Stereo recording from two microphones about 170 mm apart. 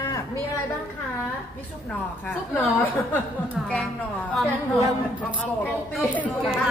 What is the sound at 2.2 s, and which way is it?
Speech, 10° left (ahead or behind).